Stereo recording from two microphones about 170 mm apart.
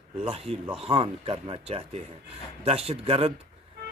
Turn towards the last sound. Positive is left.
turn(degrees=-35)  # may be behind; listen again after turning